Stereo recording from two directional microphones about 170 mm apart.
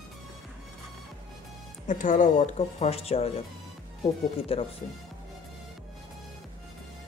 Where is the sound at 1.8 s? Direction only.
50° left (ahead or behind).